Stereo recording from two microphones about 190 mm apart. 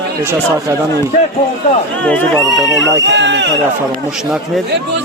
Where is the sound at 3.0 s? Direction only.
70° right (ahead or behind).